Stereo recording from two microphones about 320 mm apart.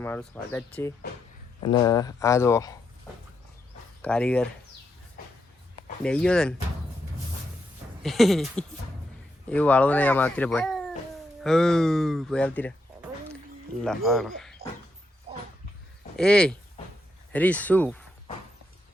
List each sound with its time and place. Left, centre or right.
0.0 s speech: centre
4.0 s speech: centre
5.2 s a sound: left
6.0 s speech: centre
8.0 s speech: centre
13.8 s speech: centre
16.1 s speech: centre